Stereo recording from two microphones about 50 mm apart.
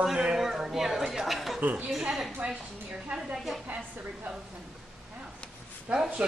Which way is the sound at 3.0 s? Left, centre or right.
Right.